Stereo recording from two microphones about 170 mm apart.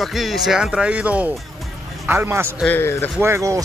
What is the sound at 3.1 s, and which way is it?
Speech, 15° right (ahead or behind).